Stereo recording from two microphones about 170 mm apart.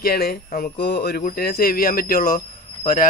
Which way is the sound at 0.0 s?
65° left (ahead or behind).